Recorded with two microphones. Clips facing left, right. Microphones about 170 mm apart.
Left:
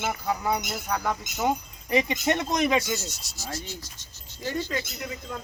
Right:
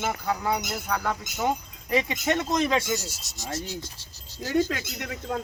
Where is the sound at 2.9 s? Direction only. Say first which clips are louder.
Right 2 dB; 15° right (ahead or behind).